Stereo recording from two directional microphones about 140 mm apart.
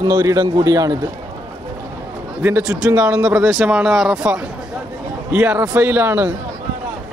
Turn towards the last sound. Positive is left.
turn(degrees=-15)  # may be behind; listen again after turning